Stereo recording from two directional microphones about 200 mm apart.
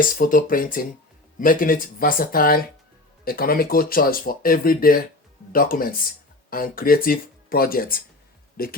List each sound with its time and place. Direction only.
0.0 s speech: 45° left (ahead or behind)